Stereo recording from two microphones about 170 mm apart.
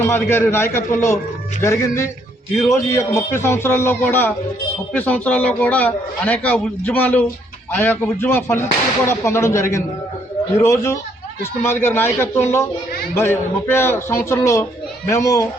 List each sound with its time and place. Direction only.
0.0 s a man's voice: 15° left (ahead or behind)